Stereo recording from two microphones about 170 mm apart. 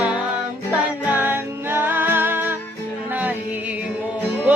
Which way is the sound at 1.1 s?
10° right (ahead or behind).